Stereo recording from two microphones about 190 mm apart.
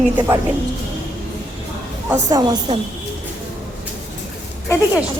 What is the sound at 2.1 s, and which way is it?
Speech, 20° right (ahead or behind).